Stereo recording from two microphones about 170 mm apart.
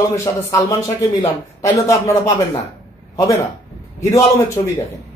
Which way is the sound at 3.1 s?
20° left (ahead or behind).